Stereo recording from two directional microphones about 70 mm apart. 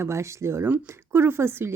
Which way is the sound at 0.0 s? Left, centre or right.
Right.